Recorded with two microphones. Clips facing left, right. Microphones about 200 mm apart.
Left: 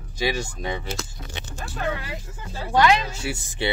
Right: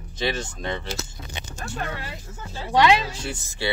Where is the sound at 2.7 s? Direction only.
20° right (ahead or behind).